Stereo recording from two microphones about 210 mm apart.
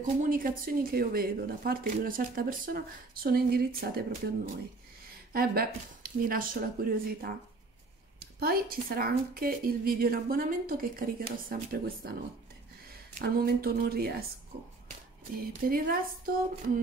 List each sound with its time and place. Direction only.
0.2 s speech: 40° right (ahead or behind)
5.3 s speech: 45° right (ahead or behind)
13.2 s speech: 45° right (ahead or behind)
15.4 s speech: 45° right (ahead or behind)